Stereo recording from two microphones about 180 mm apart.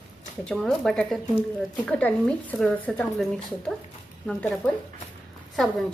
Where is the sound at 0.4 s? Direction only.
Centre (ahead or behind).